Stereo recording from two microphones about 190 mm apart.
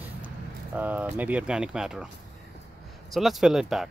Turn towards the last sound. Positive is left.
turn(degrees=0)  # may be behind; listen again after turning